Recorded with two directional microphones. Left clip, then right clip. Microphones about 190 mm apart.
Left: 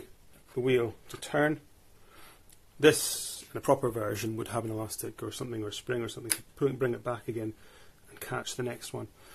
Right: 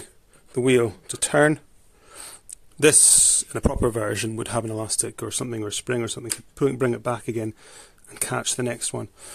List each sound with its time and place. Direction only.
0.6 s speech: 70° right (ahead or behind)
2.8 s speech: 65° right (ahead or behind)
3.5 s speech: 50° right (ahead or behind)